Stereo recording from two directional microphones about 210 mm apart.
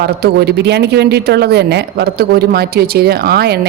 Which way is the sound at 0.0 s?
50° right (ahead or behind).